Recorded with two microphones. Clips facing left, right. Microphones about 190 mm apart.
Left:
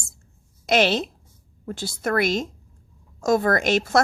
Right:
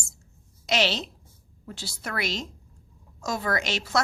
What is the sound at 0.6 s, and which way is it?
A woman's voice, 55° left (ahead or behind).